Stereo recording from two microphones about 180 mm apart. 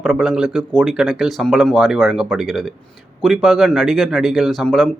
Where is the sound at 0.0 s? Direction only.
Centre (ahead or behind).